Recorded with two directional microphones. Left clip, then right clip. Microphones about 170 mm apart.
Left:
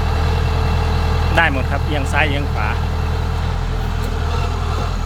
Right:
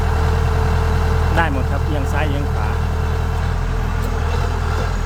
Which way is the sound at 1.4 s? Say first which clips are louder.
Left 5 dB; centre (ahead or behind).